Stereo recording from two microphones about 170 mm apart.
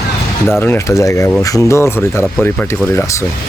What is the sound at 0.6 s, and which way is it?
Speech, 15° left (ahead or behind).